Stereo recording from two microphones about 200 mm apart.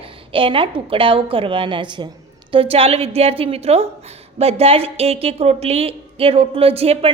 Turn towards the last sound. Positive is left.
turn(degrees=-30)  # may be behind; listen again after turning